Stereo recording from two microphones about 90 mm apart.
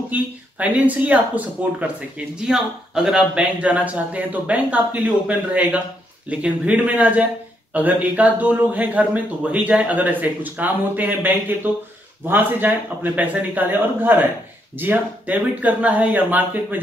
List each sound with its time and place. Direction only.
0.1 s a man's voice: 15° right (ahead or behind)